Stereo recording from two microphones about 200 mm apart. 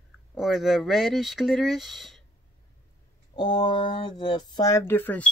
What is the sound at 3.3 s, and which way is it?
Speech, 20° left (ahead or behind).